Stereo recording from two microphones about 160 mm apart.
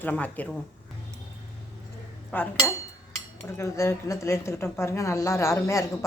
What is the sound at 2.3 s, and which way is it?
A woman's voice, 10° left (ahead or behind).